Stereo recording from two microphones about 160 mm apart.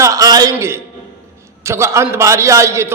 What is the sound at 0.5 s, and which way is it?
A man's voice, 15° right (ahead or behind).